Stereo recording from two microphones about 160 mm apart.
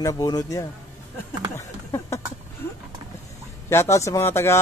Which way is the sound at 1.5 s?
20° left (ahead or behind).